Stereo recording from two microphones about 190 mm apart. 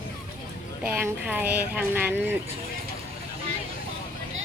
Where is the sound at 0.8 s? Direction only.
10° right (ahead or behind).